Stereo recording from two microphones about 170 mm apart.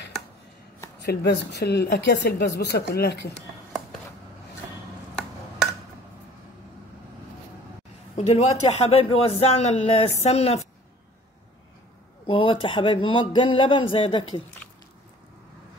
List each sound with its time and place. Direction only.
1.0 s a woman's voice: 80° left
8.2 s a man's voice: 40° left (ahead or behind)
12.3 s a man's voice: 30° left (ahead or behind)